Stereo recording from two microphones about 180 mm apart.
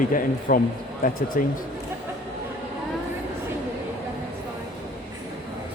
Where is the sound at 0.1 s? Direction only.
50° left (ahead or behind).